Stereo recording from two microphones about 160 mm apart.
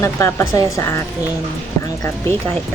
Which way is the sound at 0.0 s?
15° left (ahead or behind).